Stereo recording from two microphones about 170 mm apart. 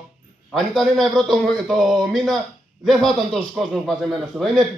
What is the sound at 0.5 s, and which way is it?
Speech, centre (ahead or behind).